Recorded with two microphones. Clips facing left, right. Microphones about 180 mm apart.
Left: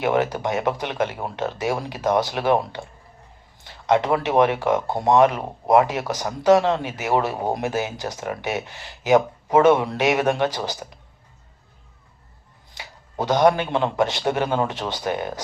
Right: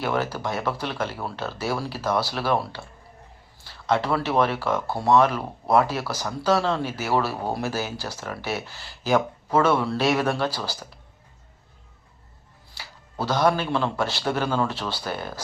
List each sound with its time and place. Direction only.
0.0 s speech: 20° left (ahead or behind)
12.7 s speech: 20° left (ahead or behind)